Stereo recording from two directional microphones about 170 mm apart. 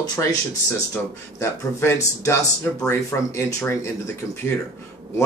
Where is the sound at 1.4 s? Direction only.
15° left (ahead or behind).